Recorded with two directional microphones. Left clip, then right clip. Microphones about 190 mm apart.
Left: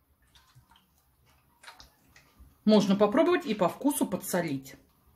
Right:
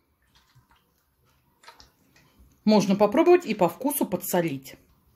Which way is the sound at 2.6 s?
25° right (ahead or behind).